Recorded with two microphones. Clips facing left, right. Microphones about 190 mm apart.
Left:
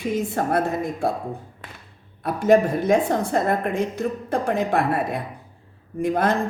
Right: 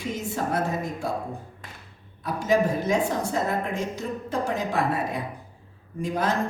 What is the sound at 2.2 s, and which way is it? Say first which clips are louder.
Speech: left 5 dB; 60° left (ahead or behind).